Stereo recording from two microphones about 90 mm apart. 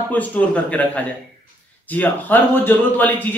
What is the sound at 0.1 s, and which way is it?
A man's voice, 15° left (ahead or behind).